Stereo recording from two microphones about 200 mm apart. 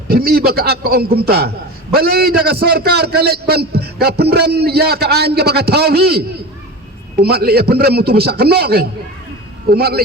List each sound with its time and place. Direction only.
0.1 s a man's voice: 50° right (ahead or behind)